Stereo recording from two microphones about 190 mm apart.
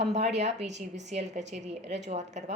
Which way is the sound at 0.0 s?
35° right (ahead or behind).